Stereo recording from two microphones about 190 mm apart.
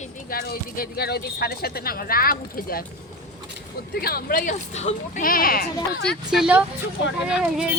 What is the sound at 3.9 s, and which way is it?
Speech, 55° left (ahead or behind).